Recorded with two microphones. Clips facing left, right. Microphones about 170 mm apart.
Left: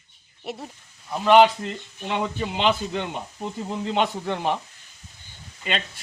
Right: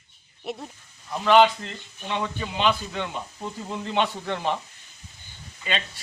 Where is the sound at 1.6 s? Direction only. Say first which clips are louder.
Left 5 dB; 50° left (ahead or behind).